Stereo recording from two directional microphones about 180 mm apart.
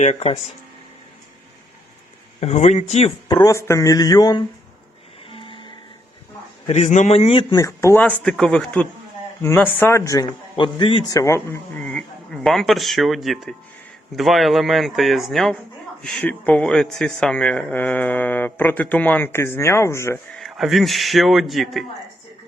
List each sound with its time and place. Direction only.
0.0 s a man's voice: 35° left (ahead or behind)
2.4 s a man's voice: 40° left (ahead or behind)
3.2 s mantra: 20° left (ahead or behind)
5.3 s music: 30° left (ahead or behind)
6.7 s a man's voice: 40° left (ahead or behind)
7.5 s speech: 15° left (ahead or behind)
11.1 s speech: 15° left (ahead or behind)
20.3 s speech: centre (ahead or behind)